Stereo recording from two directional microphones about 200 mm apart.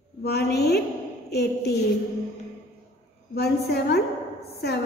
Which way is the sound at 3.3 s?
55° left (ahead or behind).